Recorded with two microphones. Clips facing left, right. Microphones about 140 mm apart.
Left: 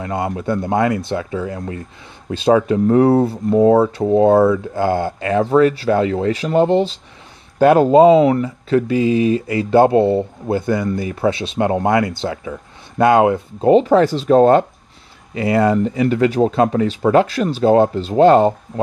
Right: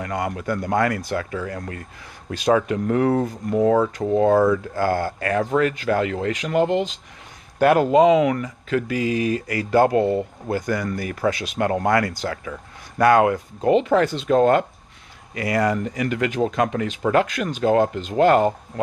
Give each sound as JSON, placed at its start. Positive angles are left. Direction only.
{"t": 0.0, "sound": "speech", "side_deg": 25}